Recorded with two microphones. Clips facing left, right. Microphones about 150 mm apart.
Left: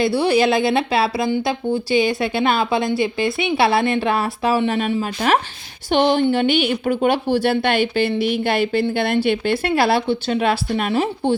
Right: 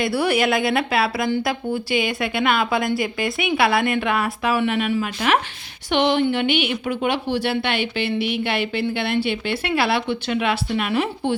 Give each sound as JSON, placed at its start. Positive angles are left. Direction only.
{"t": 0.0, "sound": "a woman's voice", "side_deg": 30}